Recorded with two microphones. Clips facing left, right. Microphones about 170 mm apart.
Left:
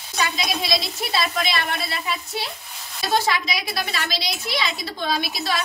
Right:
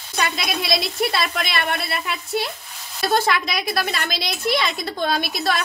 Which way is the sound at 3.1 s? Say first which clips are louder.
Right 1 dB; 55° right (ahead or behind).